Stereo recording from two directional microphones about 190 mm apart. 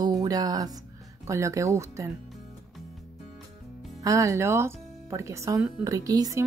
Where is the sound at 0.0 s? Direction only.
20° right (ahead or behind).